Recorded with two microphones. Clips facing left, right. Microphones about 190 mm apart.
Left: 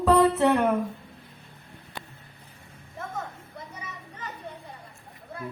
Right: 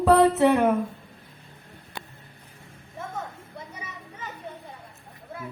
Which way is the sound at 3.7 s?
10° right (ahead or behind).